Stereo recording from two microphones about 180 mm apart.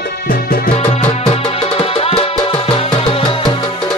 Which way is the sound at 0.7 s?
35° left (ahead or behind).